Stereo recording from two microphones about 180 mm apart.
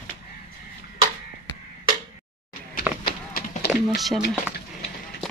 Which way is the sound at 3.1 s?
65° left (ahead or behind).